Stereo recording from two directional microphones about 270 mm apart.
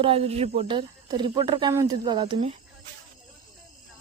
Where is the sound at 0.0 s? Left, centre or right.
Right.